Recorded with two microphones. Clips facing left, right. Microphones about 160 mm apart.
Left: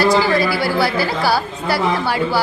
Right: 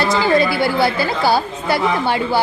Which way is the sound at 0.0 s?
20° right (ahead or behind).